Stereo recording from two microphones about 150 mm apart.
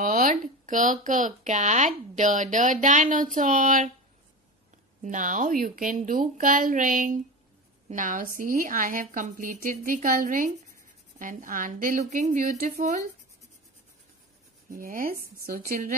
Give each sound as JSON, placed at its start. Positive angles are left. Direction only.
{"t": 0.0, "sound": "a woman's voice", "side_deg": -70}
{"t": 5.0, "sound": "a woman's voice", "side_deg": -60}
{"t": 14.7, "sound": "speech", "side_deg": -70}